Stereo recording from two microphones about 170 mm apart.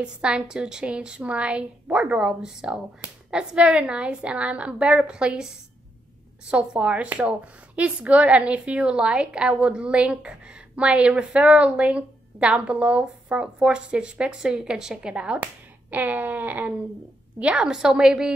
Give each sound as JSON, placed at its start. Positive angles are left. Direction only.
{"t": 0.0, "sound": "a woman's voice", "side_deg": -5}